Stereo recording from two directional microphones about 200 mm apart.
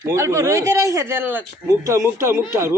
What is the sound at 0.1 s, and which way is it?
A man's voice, 15° right (ahead or behind).